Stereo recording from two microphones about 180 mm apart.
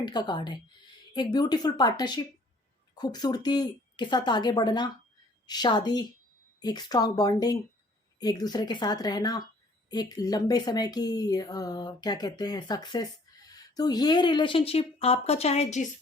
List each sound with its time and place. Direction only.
0.0 s speech: 25° left (ahead or behind)